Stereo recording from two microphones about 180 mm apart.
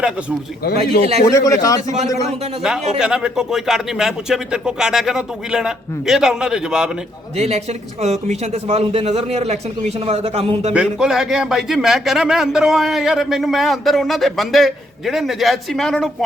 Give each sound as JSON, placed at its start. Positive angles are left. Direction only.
{"t": 0.8, "sound": "speech", "side_deg": -35}
{"t": 1.2, "sound": "speech", "side_deg": 15}
{"t": 3.0, "sound": "a man's voice", "side_deg": -5}
{"t": 7.3, "sound": "speech", "side_deg": -35}
{"t": 10.8, "sound": "a man's voice", "side_deg": -5}